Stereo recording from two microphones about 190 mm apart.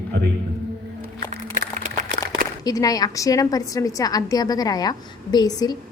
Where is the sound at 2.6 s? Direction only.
20° left (ahead or behind).